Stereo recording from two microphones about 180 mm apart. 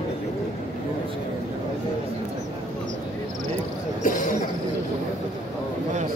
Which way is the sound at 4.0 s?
45° left (ahead or behind).